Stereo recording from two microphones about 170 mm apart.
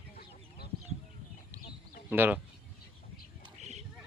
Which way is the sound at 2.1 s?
10° right (ahead or behind).